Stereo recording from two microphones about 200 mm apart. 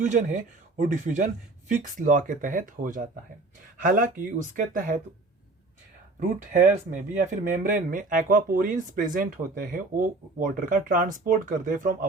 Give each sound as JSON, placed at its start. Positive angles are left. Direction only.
{"t": 0.0, "sound": "speech", "side_deg": -40}
{"t": 6.1, "sound": "speech", "side_deg": -40}